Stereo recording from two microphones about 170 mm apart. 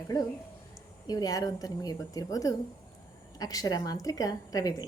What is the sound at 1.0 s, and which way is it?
A woman's voice, 20° left (ahead or behind).